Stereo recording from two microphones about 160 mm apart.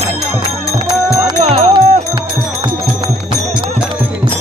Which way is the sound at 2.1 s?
30° right (ahead or behind).